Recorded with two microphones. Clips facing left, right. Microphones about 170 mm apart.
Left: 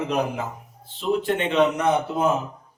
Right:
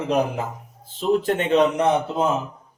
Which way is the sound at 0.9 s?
40° right (ahead or behind).